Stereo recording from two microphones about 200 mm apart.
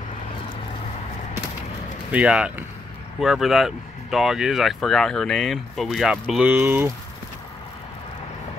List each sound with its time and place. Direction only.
2.0 s speech: 5° right (ahead or behind)